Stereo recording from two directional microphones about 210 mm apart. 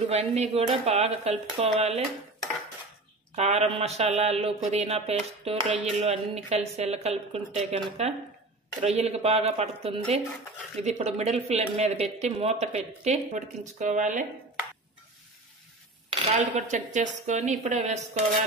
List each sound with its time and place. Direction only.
0.1 s speech: 30° right (ahead or behind)
3.3 s speech: 30° right (ahead or behind)
16.1 s speech: 35° right (ahead or behind)